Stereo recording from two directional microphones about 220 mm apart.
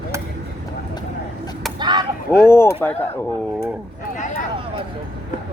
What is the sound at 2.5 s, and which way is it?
Speech, 10° left (ahead or behind).